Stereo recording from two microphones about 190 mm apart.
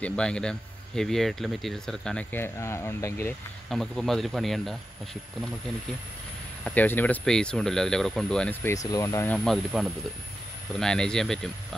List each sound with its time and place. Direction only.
0.0 s speech: 5° left (ahead or behind)
3.6 s speech: centre (ahead or behind)
6.6 s speech: 10° left (ahead or behind)